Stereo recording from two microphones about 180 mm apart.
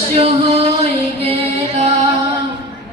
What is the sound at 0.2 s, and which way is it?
Music, 30° right (ahead or behind).